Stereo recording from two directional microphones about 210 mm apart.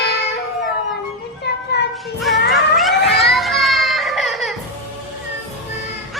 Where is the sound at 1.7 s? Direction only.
55° left (ahead or behind).